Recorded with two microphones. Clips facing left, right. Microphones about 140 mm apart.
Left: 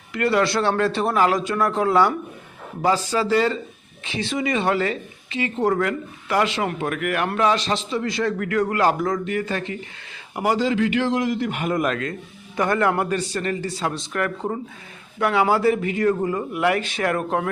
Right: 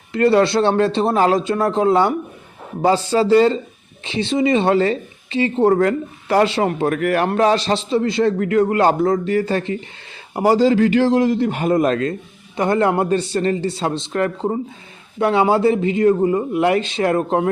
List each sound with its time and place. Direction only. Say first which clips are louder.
0.1 s a man's voice: right 6 dB; 30° right (ahead or behind)